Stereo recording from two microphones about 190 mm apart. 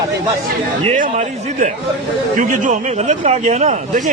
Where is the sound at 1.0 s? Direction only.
40° right (ahead or behind).